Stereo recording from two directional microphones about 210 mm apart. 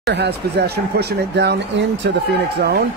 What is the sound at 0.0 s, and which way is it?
Speech, 55° right (ahead or behind).